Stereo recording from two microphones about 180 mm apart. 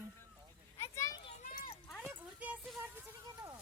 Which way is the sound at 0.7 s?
15° left (ahead or behind).